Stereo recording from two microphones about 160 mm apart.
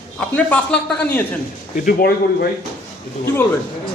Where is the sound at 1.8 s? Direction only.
65° left (ahead or behind).